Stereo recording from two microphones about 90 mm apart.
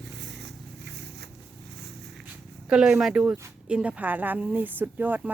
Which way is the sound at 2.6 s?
10° right (ahead or behind).